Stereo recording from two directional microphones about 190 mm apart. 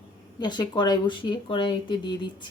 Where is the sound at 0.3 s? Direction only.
20° left (ahead or behind).